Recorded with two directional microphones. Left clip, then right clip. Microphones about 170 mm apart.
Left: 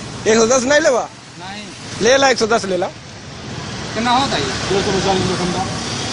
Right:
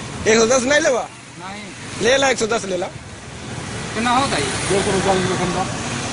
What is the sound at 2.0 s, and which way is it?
Speech, 15° left (ahead or behind).